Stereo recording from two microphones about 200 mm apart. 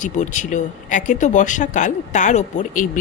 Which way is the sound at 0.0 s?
40° left (ahead or behind).